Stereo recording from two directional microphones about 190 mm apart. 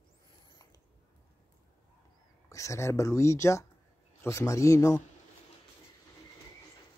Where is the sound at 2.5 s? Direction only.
15° left (ahead or behind).